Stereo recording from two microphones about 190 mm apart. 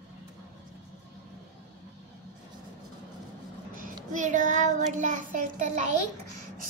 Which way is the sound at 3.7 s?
45° right (ahead or behind).